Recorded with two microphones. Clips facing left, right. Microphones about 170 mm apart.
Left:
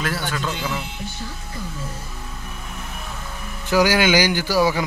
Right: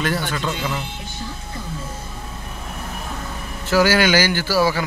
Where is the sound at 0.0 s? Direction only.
Centre (ahead or behind).